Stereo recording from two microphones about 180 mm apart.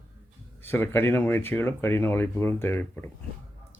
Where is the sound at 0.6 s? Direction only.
10° left (ahead or behind).